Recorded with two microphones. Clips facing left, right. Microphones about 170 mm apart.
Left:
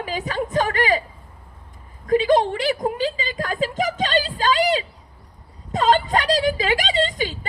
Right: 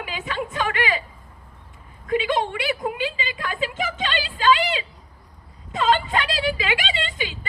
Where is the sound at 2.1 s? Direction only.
40° left (ahead or behind).